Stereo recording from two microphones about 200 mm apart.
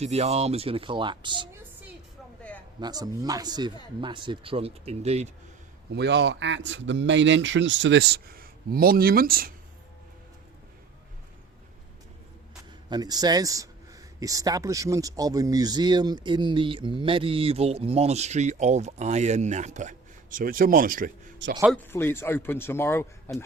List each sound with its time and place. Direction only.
0.0 s speech: 30° right (ahead or behind)
2.8 s speech: 20° right (ahead or behind)
5.9 s a man's voice: 60° right (ahead or behind)
12.9 s speech: 20° right (ahead or behind); by 21.1 s 45° right (ahead or behind)
21.7 s a man's voice: 10° left (ahead or behind)